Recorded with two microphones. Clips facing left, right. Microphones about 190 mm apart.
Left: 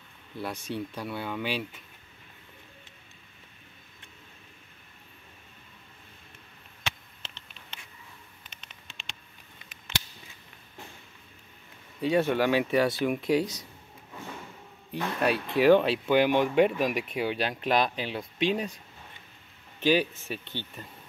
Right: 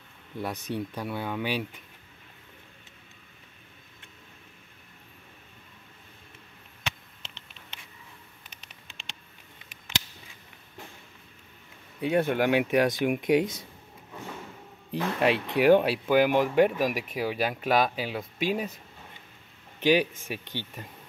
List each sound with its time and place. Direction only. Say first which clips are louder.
0.4 s speech: right 2 dB; 15° right (ahead or behind)
12.0 s speech: even; 15° right (ahead or behind)
14.9 s speech: right 2 dB; 25° right (ahead or behind); by 18.8 s 5° right (ahead or behind)
19.8 s speech: right 1 dB; 15° right (ahead or behind)